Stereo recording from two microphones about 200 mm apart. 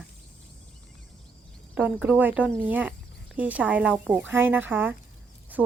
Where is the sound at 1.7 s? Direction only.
5° right (ahead or behind).